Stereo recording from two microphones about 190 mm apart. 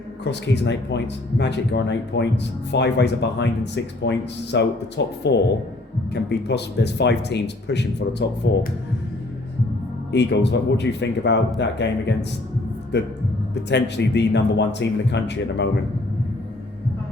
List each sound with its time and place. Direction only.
0.3 s speech: 65° left (ahead or behind)
10.1 s speech: 65° left (ahead or behind)
13.5 s speech: 65° left (ahead or behind)